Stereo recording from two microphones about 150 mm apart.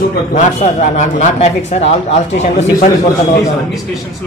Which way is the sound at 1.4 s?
45° left (ahead or behind).